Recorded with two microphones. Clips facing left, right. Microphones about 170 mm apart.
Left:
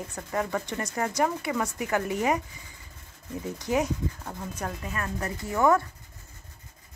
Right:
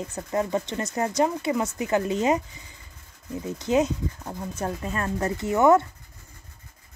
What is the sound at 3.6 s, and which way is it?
A woman's voice, 20° right (ahead or behind).